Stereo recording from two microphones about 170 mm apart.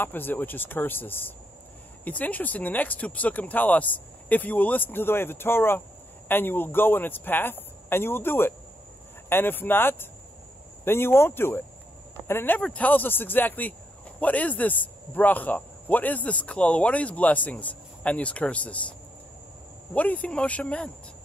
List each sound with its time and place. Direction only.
0.0 s a man's voice: 10° left (ahead or behind)
19.9 s a man's voice: 10° left (ahead or behind)